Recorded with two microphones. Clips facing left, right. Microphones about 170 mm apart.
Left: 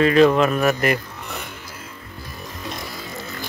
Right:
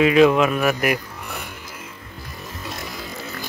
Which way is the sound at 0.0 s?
5° right (ahead or behind).